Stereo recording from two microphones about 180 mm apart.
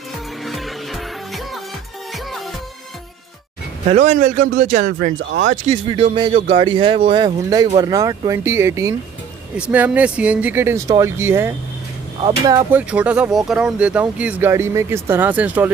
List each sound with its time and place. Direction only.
0.5 s music: centre (ahead or behind)
3.9 s speech: 40° right (ahead or behind)
5.2 s speech: 80° right
5.7 s speech: 30° right (ahead or behind); by 11.5 s 15° right (ahead or behind)
12.2 s speech: 25° right (ahead or behind)
12.7 s speech: 5° right (ahead or behind)